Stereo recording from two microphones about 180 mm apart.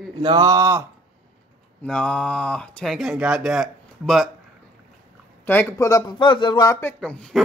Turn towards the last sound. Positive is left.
turn(degrees=5)  # may be behind; listen again after turning